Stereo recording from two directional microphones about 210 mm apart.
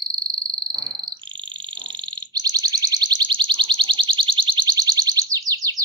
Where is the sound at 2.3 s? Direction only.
20° right (ahead or behind).